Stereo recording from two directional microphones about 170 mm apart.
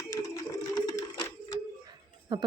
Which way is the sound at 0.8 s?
20° left (ahead or behind).